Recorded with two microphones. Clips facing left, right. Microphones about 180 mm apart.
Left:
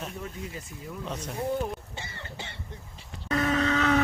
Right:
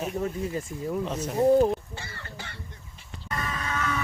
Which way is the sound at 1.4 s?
35° right (ahead or behind).